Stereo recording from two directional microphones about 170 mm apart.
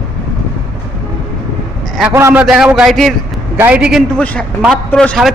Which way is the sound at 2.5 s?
5° right (ahead or behind).